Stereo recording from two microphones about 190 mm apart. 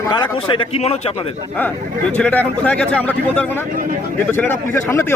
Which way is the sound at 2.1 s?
10° left (ahead or behind).